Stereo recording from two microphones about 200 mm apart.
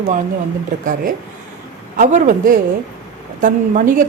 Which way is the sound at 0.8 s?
45° right (ahead or behind).